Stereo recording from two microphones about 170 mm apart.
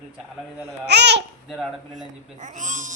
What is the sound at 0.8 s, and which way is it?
Speech, 85° right.